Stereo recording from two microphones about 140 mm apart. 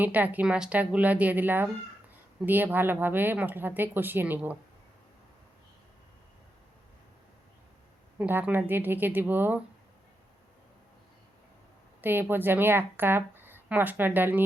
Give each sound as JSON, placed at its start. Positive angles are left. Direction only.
{"t": 0.0, "sound": "a woman's voice", "side_deg": -10}
{"t": 8.2, "sound": "a woman's voice", "side_deg": -10}
{"t": 12.0, "sound": "a woman's voice", "side_deg": -15}